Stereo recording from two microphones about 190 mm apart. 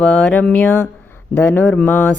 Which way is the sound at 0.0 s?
5° left (ahead or behind).